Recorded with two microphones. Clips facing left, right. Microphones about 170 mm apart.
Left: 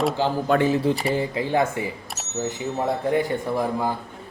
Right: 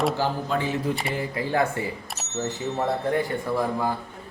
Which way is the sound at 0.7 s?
30° left (ahead or behind).